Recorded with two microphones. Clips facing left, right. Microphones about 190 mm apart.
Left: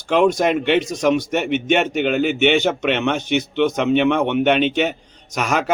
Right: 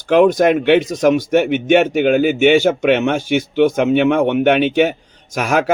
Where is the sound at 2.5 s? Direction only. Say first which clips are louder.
Right 5 dB; 50° right (ahead or behind).